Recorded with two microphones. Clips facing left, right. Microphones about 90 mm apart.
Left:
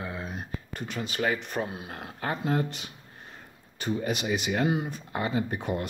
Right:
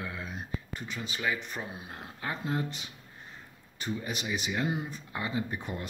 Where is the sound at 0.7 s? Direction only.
60° left (ahead or behind).